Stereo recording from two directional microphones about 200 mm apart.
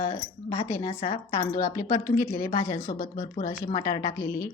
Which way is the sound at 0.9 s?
35° left (ahead or behind).